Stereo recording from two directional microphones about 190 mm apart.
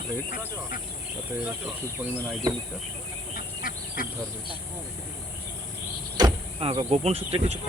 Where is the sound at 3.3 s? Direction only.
50° left (ahead or behind).